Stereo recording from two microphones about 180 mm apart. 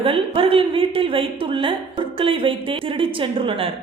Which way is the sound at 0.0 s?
30° right (ahead or behind).